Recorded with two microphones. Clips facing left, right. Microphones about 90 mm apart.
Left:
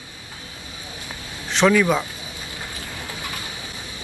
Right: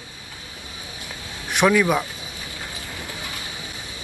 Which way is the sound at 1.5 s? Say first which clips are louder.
Left 1 dB; 10° right (ahead or behind).